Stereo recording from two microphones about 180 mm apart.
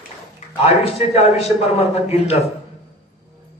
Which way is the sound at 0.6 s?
35° left (ahead or behind).